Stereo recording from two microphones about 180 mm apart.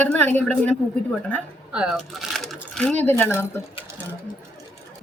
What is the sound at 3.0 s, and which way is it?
Speech, 10° left (ahead or behind).